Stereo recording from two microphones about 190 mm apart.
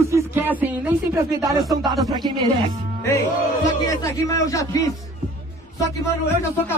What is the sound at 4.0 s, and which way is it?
Speech, 15° left (ahead or behind).